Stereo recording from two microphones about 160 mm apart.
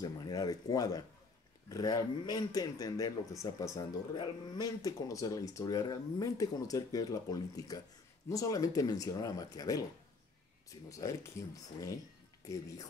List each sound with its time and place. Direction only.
0.0 s speech: 25° left (ahead or behind)